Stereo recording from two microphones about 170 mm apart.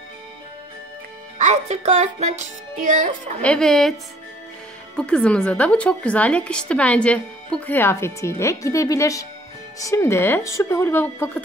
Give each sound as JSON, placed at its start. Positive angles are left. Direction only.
{"t": 1.4, "sound": "speech", "side_deg": -40}
{"t": 3.4, "sound": "speech", "side_deg": 5}
{"t": 4.9, "sound": "a woman's voice", "side_deg": 5}